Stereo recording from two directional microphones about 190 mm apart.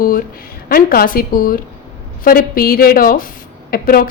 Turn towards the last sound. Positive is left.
turn(degrees=50)  # may be behind; listen again after turning